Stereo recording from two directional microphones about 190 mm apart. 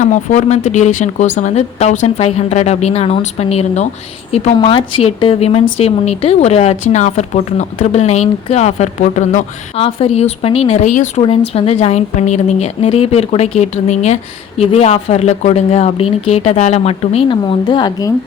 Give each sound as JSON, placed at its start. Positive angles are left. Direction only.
{"t": 0.0, "sound": "a woman's voice", "side_deg": 40}